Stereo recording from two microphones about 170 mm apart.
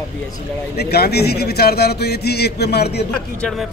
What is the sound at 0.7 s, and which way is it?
A man's voice, 70° left (ahead or behind).